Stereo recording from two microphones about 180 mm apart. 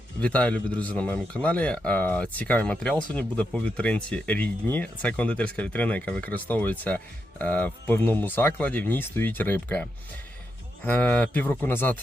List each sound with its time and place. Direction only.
0.2 s speech: 5° left (ahead or behind)